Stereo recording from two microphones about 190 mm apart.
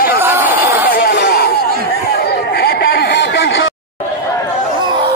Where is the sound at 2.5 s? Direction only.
55° left (ahead or behind); by 3.7 s 75° left (ahead or behind).